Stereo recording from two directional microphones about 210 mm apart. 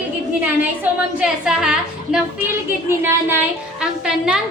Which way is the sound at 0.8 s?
5° right (ahead or behind).